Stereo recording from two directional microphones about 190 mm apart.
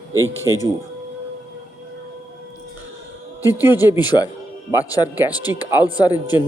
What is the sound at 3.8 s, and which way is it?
Speech, 20° left (ahead or behind).